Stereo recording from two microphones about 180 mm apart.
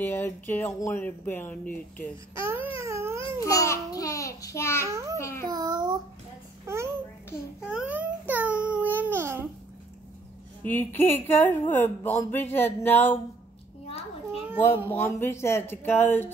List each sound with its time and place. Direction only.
0.0 s speech: 10° left (ahead or behind)
2.3 s speech: 15° right (ahead or behind)
2.8 s babbling: 15° right (ahead or behind)
3.4 s speech: 15° left (ahead or behind)
4.8 s speech: 15° right (ahead or behind)
5.2 s speech: 15° left (ahead or behind)
5.5 s a sound: 25° right (ahead or behind)
7.6 s babbling: 5° right (ahead or behind)
10.6 s speech: 10° left (ahead or behind)
14.9 s speech: 10° left (ahead or behind)